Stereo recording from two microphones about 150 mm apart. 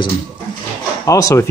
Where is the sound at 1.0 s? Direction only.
20° left (ahead or behind).